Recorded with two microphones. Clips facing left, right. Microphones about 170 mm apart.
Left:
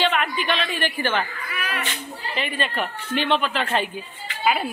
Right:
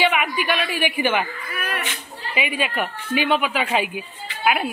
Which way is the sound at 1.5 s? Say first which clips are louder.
Right 1 dB; 50° right (ahead or behind).